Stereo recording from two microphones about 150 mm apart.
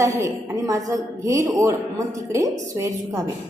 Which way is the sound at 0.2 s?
20° right (ahead or behind).